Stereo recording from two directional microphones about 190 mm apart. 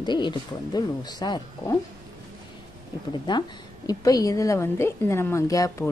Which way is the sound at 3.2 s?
20° left (ahead or behind).